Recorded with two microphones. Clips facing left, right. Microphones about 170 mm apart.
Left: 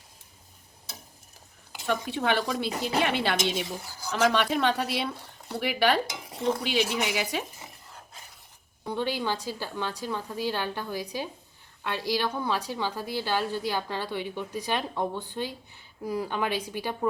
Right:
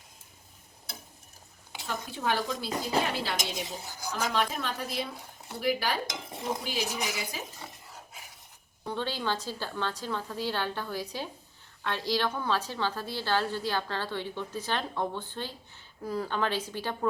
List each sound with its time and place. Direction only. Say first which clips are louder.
1.9 s speech: left 5 dB; 75° left (ahead or behind)
8.9 s a woman's voice: left 3 dB; 15° left (ahead or behind)